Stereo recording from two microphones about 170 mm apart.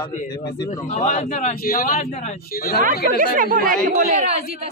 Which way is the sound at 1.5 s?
60° left (ahead or behind).